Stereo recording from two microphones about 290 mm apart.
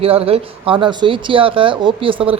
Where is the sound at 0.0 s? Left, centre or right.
Centre.